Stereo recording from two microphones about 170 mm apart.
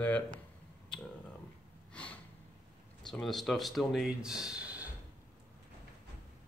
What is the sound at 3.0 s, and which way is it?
Speech, centre (ahead or behind).